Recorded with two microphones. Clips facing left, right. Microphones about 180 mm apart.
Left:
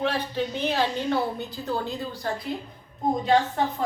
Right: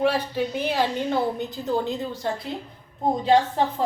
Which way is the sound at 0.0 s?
10° right (ahead or behind).